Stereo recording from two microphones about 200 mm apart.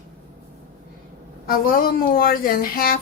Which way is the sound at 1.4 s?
45° left (ahead or behind).